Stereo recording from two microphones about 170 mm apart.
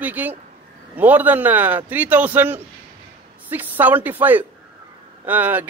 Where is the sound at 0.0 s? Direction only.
10° right (ahead or behind).